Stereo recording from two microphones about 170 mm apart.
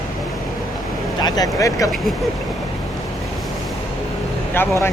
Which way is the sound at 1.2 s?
25° left (ahead or behind).